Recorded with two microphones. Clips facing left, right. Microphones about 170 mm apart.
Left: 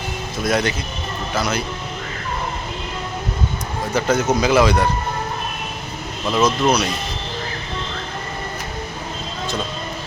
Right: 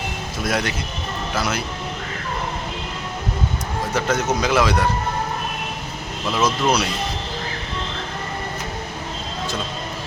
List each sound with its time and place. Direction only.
0.4 s speech: centre (ahead or behind)
3.9 s speech: centre (ahead or behind)
6.3 s speech: 5° right (ahead or behind)